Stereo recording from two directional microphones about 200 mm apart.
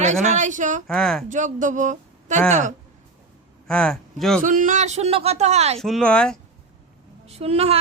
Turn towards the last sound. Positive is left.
turn(degrees=-30)  # may be behind; listen again after turning